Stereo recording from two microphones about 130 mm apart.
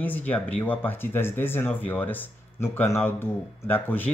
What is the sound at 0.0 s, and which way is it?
Speech, 10° left (ahead or behind).